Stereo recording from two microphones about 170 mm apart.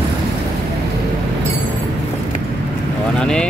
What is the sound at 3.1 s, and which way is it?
Speech, 5° left (ahead or behind).